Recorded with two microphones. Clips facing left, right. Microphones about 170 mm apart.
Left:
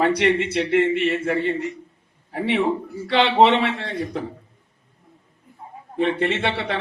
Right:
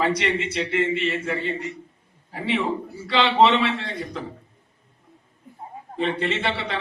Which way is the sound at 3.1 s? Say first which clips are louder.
Left 2 dB; 60° left (ahead or behind).